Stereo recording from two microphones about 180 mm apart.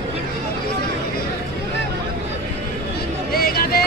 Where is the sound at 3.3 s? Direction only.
55° left (ahead or behind).